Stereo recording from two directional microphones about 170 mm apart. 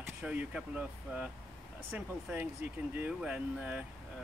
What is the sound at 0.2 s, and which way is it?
Speech, 10° right (ahead or behind).